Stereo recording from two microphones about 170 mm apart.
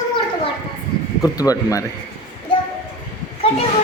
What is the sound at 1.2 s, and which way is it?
Speech, 20° left (ahead or behind).